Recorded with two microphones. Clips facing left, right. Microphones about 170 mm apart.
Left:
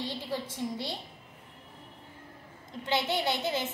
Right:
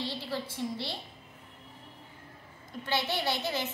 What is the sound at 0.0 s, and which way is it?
Speech, 15° left (ahead or behind).